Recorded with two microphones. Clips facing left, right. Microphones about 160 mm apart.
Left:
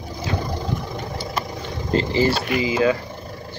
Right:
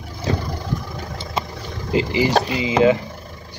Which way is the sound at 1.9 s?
15° right (ahead or behind).